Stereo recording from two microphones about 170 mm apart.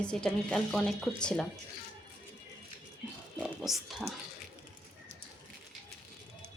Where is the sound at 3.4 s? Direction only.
Centre (ahead or behind).